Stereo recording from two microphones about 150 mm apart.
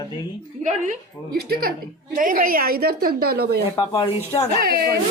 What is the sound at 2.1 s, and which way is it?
A woman's voice, 65° right (ahead or behind).